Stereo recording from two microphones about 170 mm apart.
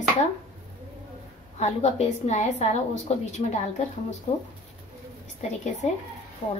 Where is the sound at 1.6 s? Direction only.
40° left (ahead or behind).